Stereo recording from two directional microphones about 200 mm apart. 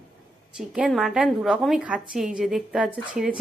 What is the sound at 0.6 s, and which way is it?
A woman's voice, centre (ahead or behind).